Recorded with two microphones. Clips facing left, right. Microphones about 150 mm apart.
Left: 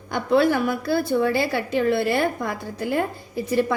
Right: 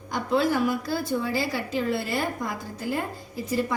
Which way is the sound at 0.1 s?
65° left (ahead or behind).